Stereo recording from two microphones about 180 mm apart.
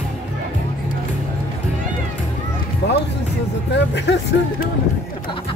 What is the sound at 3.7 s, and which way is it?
Speech, 75° left (ahead or behind).